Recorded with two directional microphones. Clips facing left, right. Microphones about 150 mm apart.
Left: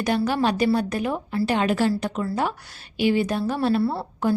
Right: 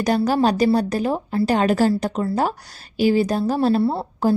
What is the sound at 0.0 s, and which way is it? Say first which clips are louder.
A woman's voice: right 4 dB; 40° right (ahead or behind).